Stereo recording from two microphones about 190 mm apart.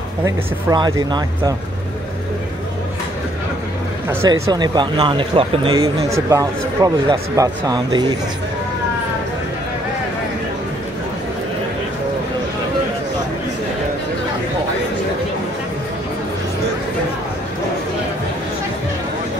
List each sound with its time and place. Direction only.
0.2 s speech: 20° right (ahead or behind)
4.1 s speech: 20° right (ahead or behind)